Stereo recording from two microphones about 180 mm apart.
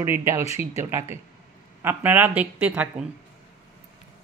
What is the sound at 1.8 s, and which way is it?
Speech, 10° right (ahead or behind).